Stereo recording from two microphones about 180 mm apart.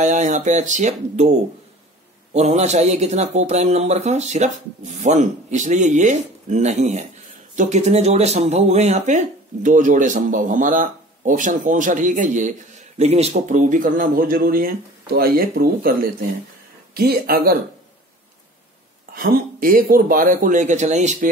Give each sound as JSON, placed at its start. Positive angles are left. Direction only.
{"t": 0.0, "sound": "speech", "side_deg": -45}
{"t": 2.3, "sound": "speech", "side_deg": -40}
{"t": 19.6, "sound": "speech", "side_deg": -50}